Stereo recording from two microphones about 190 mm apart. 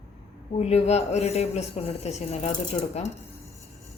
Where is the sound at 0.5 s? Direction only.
35° left (ahead or behind).